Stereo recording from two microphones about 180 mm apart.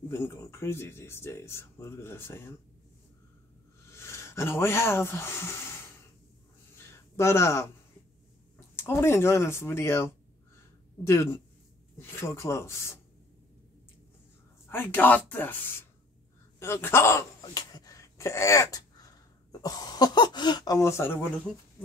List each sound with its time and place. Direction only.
0.1 s speech: 15° left (ahead or behind)
3.9 s speech: 15° left (ahead or behind)
6.9 s a sound: 15° left (ahead or behind)
8.5 s speech: 15° left (ahead or behind)
11.1 s speech: 15° left (ahead or behind)
14.7 s speech: 10° left (ahead or behind)
16.5 s a sound: 15° left (ahead or behind)
19.6 s speech: 20° left (ahead or behind)